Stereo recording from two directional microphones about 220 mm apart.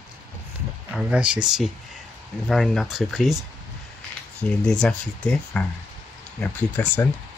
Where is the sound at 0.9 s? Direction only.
5° right (ahead or behind).